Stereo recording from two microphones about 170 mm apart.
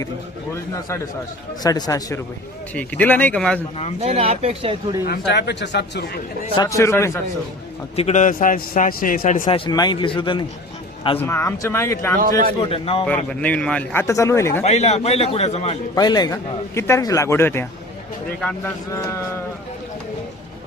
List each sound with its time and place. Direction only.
0.5 s a man's voice: 15° left (ahead or behind)
2.7 s a man's voice: 10° left (ahead or behind)
4.0 s speech: 35° right (ahead or behind)
5.3 s speech: 90° left
6.6 s a man's voice: 20° left (ahead or behind)
7.9 s a man's voice: 40° left (ahead or behind)
9.5 s speech: 30° left (ahead or behind)
11.2 s a man's voice: 15° left (ahead or behind)
12.5 s a man's voice: 35° left (ahead or behind)
13.1 s a man's voice: 5° left (ahead or behind)
14.6 s a man's voice: 40° left (ahead or behind)
16.0 s a man's voice: 25° left (ahead or behind)
18.9 s a man's voice: 20° left (ahead or behind)